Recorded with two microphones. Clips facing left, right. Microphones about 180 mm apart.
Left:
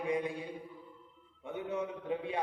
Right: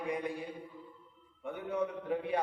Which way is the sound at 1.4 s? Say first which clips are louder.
Right 2 dB; 25° left (ahead or behind).